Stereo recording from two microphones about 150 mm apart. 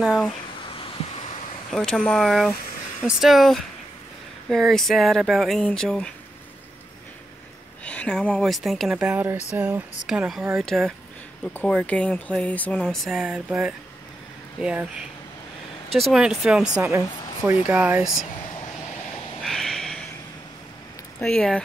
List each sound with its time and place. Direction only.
0.0 s speech: 5° right (ahead or behind)
1.7 s speech: 5° left (ahead or behind)
7.8 s speech: 10° left (ahead or behind)
16.1 s speech: 5° right (ahead or behind)
16.7 s speech: 20° right (ahead or behind)
19.4 s a sound: centre (ahead or behind)
21.2 s speech: 5° left (ahead or behind)